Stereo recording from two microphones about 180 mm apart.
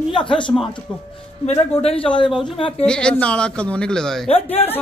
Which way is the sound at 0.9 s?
5° left (ahead or behind).